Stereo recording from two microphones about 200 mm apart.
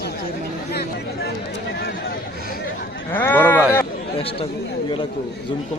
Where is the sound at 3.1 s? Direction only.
10° left (ahead or behind).